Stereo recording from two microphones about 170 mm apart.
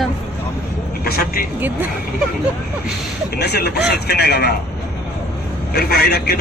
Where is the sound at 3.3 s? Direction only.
70° left (ahead or behind).